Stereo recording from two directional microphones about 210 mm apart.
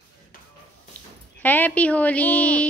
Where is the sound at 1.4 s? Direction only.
10° left (ahead or behind).